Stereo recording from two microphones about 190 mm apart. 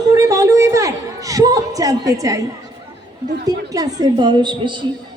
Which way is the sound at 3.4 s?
20° right (ahead or behind).